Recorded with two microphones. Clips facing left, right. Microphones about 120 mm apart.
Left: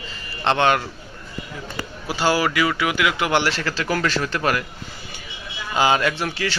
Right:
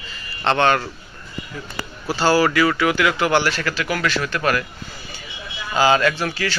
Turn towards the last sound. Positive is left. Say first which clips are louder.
# right 2 dB
turn(degrees=20)  # may be behind; listen again after turning